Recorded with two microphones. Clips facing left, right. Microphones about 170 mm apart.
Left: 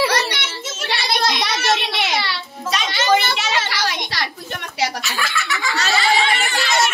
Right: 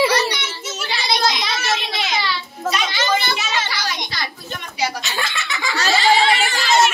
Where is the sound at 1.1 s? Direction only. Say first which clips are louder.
Even; 60° left (ahead or behind).